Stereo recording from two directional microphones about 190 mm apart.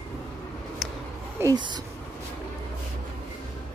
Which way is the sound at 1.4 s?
20° right (ahead or behind).